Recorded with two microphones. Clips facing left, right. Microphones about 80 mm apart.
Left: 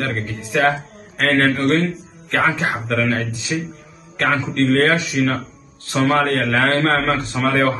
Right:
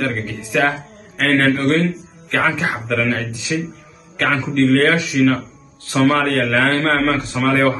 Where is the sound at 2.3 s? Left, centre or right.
Left.